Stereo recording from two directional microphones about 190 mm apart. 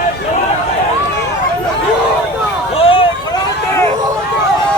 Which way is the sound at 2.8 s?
30° left (ahead or behind).